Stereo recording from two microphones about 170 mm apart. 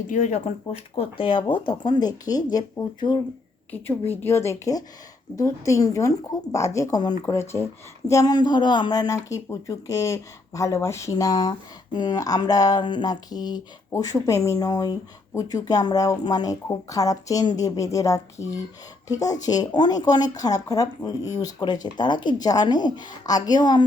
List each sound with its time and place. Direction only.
0.1 s speech: 45° left (ahead or behind); by 3.2 s 25° left (ahead or behind)
3.7 s a woman's voice: 10° left (ahead or behind)